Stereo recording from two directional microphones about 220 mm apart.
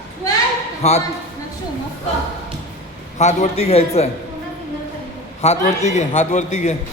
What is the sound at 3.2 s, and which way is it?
Speech, 30° left (ahead or behind).